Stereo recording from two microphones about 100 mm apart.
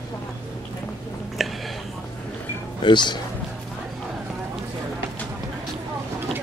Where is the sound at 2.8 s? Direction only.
50° left (ahead or behind).